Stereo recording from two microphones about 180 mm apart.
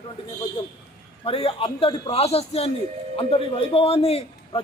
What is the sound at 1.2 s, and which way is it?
A man's voice, 30° left (ahead or behind).